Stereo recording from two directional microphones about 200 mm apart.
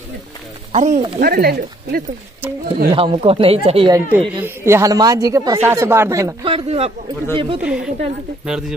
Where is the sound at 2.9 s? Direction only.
30° right (ahead or behind).